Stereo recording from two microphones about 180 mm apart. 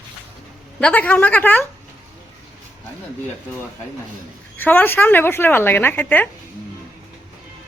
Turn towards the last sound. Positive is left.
turn(degrees=10)  # may be behind; listen again after turning